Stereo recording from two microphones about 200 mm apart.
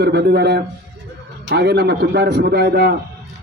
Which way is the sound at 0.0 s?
55° right (ahead or behind).